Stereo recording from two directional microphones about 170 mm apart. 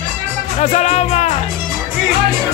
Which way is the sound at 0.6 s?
40° left (ahead or behind).